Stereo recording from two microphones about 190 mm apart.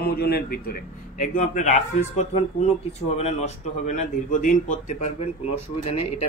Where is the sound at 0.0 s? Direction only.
55° left (ahead or behind).